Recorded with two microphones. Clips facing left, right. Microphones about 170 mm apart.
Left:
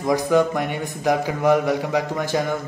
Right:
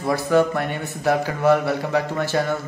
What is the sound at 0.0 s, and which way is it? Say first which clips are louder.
A man's voice: even; 15° left (ahead or behind).